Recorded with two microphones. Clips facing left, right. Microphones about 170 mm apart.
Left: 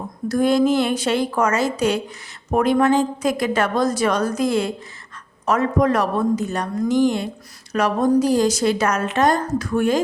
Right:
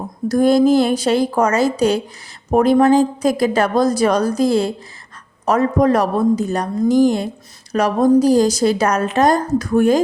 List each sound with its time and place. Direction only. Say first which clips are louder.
0.3 s a woman's voice: right 4 dB; 40° right (ahead or behind)